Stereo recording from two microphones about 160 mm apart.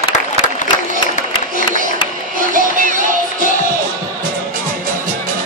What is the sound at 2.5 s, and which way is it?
Music, 55° right (ahead or behind).